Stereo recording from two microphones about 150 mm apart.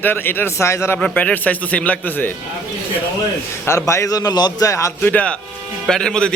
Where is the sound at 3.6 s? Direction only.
20° left (ahead or behind).